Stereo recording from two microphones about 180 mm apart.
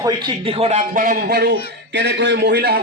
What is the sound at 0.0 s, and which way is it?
Speech, 25° right (ahead or behind).